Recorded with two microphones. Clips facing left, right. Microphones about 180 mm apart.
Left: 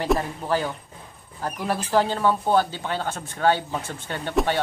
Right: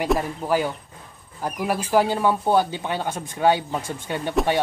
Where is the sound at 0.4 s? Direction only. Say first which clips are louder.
Right 2 dB; 15° right (ahead or behind).